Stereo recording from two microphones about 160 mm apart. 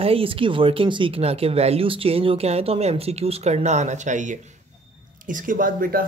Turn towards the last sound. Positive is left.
turn(degrees=-65)  # may be behind; listen again after turning